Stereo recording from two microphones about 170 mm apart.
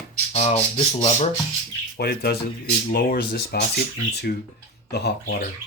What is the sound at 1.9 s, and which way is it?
Speech, 70° left (ahead or behind).